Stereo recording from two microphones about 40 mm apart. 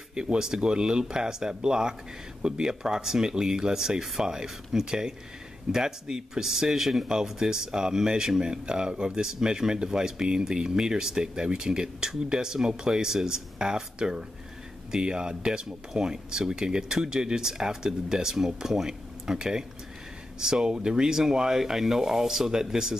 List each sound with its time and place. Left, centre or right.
0.1 s speech: centre